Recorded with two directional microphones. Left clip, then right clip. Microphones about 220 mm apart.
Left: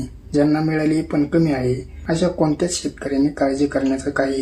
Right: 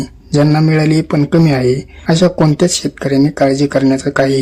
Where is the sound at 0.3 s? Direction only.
40° right (ahead or behind).